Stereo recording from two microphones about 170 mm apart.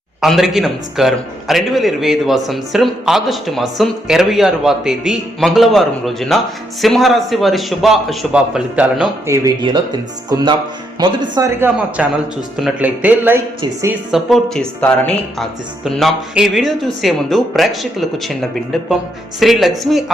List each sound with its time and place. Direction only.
0.2 s a man's voice: centre (ahead or behind); by 11.7 s 20° right (ahead or behind)
12.0 s speech: 5° right (ahead or behind)
14.1 s a man's voice: centre (ahead or behind)
19.4 s a man's voice: centre (ahead or behind)